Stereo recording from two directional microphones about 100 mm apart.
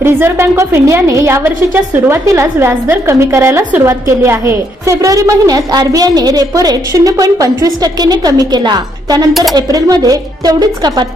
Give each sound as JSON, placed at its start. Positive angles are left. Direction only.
{"t": 0.0, "sound": "a woman's voice", "side_deg": -25}
{"t": 1.5, "sound": "a woman's voice", "side_deg": -20}